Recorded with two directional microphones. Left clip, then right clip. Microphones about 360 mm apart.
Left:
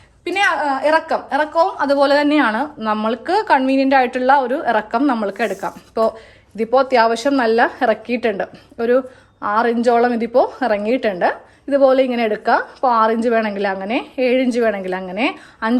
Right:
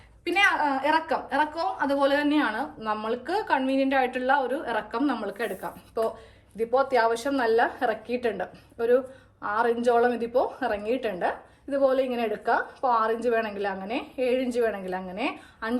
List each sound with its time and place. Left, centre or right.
0.3 s a woman's voice: centre